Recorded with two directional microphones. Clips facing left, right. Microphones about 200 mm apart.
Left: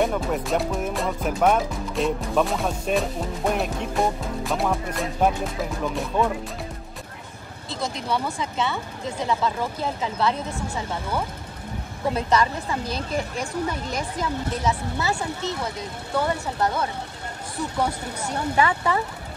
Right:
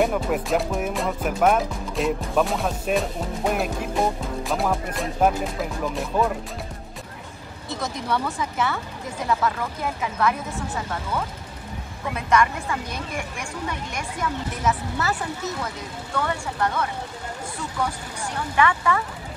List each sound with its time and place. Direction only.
0.0 s speech: 5° right (ahead or behind)
8.4 s speech: 25° left (ahead or behind)
10.7 s speech: 15° left (ahead or behind)
12.1 s a woman's voice: 35° left (ahead or behind)